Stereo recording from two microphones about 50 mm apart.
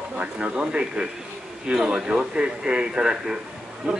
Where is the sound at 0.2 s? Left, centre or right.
Right.